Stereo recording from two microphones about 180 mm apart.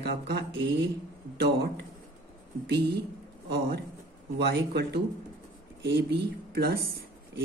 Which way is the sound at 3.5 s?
60° right (ahead or behind).